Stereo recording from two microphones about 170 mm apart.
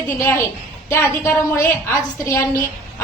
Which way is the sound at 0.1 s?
10° left (ahead or behind).